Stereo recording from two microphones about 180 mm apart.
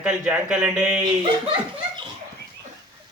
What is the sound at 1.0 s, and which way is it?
Speech, 25° right (ahead or behind).